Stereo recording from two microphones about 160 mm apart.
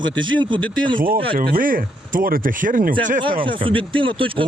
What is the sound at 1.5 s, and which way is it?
Speech, 60° right (ahead or behind).